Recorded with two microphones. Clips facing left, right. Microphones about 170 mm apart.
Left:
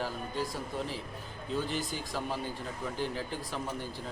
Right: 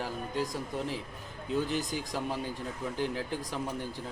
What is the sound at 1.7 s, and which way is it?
Speech, 15° right (ahead or behind).